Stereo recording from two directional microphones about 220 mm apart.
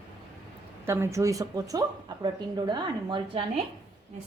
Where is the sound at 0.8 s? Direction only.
10° right (ahead or behind).